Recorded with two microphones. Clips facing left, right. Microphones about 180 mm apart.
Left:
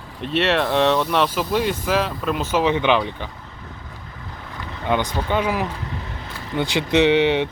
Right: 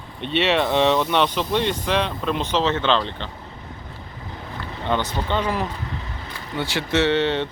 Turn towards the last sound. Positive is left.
turn(degrees=15)  # may be behind; listen again after turning